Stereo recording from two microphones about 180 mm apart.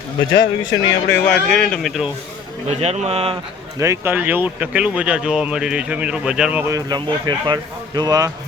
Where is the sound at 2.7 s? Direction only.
35° right (ahead or behind).